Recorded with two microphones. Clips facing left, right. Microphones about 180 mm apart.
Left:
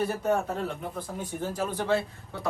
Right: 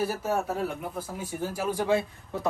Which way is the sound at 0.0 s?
5° right (ahead or behind).